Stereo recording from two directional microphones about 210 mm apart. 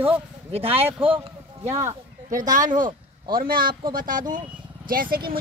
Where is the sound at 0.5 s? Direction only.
25° right (ahead or behind).